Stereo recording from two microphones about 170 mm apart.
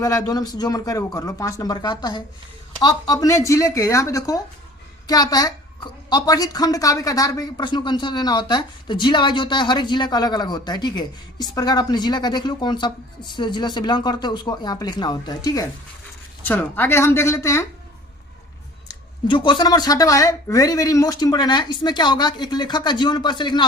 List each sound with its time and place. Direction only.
0.0 s a woman's voice: 20° left (ahead or behind)
16.4 s speech: 10° left (ahead or behind)
18.9 s a woman's voice: 30° left (ahead or behind)